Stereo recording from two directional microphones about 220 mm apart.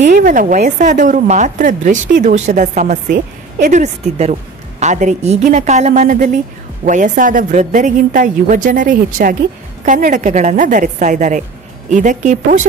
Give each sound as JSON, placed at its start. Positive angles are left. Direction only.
{"t": 0.0, "sound": "a woman's voice", "side_deg": -35}